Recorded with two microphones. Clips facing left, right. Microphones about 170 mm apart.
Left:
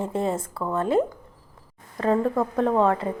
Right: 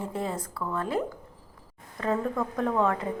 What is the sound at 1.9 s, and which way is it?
Speech, 35° left (ahead or behind).